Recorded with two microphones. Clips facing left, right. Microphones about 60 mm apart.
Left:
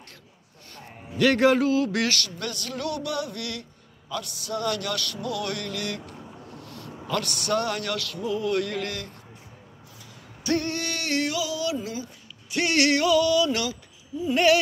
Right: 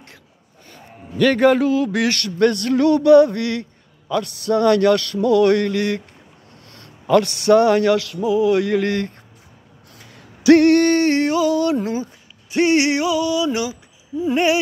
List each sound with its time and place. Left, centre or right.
1.1 s a man's voice: centre
2.0 s a man's voice: right
8.2 s mantra: centre
10.4 s hoot: right
10.8 s a man's voice: right